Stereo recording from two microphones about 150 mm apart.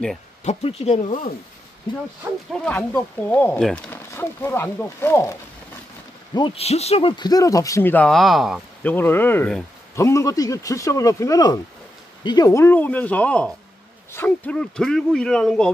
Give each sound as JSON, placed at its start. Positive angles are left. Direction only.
{"t": 0.4, "sound": "speech", "side_deg": 45}
{"t": 2.6, "sound": "speech", "side_deg": 5}
{"t": 4.1, "sound": "speech", "side_deg": 15}
{"t": 6.3, "sound": "speech", "side_deg": 35}
{"t": 8.8, "sound": "speech", "side_deg": 15}